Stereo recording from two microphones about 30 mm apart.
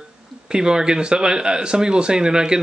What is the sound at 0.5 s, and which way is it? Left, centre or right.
Speech, right.